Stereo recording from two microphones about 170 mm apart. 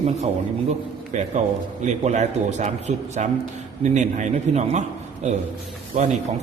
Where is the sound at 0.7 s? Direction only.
45° right (ahead or behind).